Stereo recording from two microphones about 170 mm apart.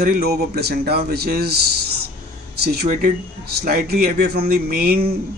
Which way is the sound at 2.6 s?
60° right (ahead or behind).